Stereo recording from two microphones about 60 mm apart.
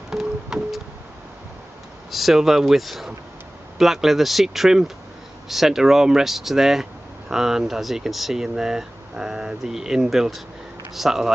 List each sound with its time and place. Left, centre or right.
0.1 s keyboard: centre
2.0 s speech: centre